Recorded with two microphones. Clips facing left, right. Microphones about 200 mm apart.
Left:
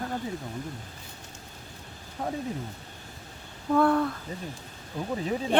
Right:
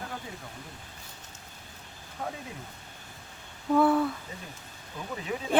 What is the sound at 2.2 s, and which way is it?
Speech, 35° left (ahead or behind).